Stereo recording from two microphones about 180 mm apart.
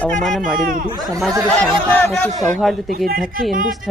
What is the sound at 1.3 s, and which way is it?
Speech, 20° right (ahead or behind).